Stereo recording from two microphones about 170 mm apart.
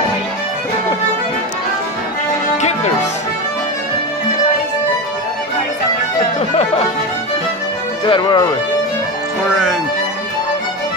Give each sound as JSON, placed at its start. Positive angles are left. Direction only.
{"t": 2.5, "sound": "music", "side_deg": 45}
{"t": 6.5, "sound": "music", "side_deg": 40}
{"t": 8.0, "sound": "speech", "side_deg": 25}